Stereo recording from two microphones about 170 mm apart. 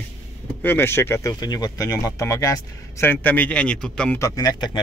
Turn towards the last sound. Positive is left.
turn(degrees=25)  # may be behind; listen again after turning